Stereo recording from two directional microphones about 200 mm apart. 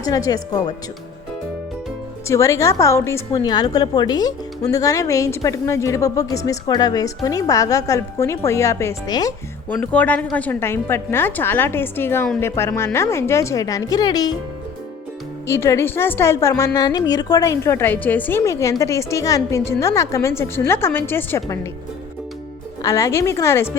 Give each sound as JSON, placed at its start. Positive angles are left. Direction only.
{"t": 0.0, "sound": "a woman's voice", "side_deg": 20}
{"t": 2.2, "sound": "a woman's voice", "side_deg": 15}
{"t": 9.6, "sound": "a woman's voice", "side_deg": 10}
{"t": 15.4, "sound": "a woman's voice", "side_deg": 15}
{"t": 22.8, "sound": "a woman's voice", "side_deg": 15}